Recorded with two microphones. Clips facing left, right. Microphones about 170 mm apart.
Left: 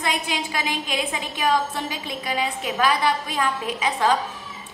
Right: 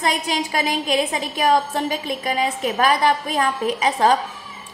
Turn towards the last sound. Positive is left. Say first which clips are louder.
# right 5 dB
turn(degrees=-40)  # may be behind; listen again after turning